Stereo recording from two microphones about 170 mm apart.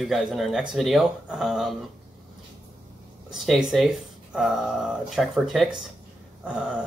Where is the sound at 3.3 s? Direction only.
Centre (ahead or behind).